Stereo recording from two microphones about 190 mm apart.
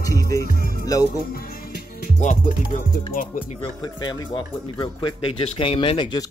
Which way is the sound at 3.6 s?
25° left (ahead or behind).